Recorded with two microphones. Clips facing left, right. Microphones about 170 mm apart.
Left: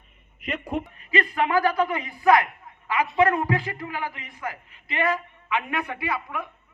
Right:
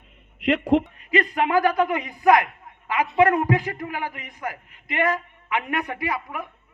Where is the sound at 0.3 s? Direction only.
90° right.